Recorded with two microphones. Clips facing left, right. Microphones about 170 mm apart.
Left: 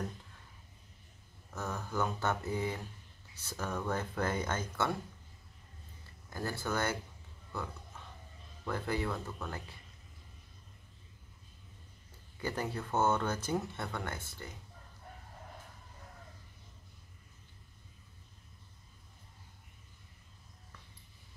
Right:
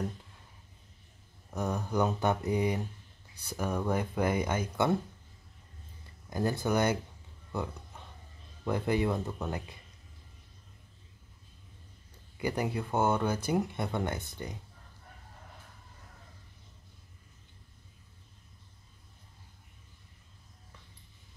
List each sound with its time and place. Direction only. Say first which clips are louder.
1.5 s speech: right 6 dB; 15° right (ahead or behind)
6.3 s speech: right 7 dB; 20° right (ahead or behind)
8.6 s speech: right 6 dB; 20° right (ahead or behind)
12.4 s speech: right 5 dB; 15° right (ahead or behind)